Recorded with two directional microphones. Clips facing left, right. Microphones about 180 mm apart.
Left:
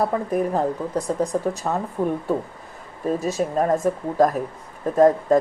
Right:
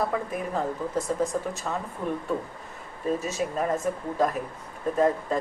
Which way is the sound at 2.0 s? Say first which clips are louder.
Left 8 dB; 75° left (ahead or behind).